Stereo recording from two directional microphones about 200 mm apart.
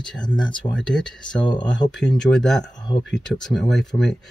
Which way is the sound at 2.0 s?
5° left (ahead or behind).